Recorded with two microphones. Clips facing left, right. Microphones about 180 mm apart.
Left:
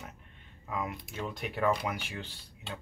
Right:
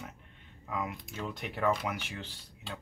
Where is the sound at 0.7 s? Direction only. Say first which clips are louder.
Even; 5° left (ahead or behind).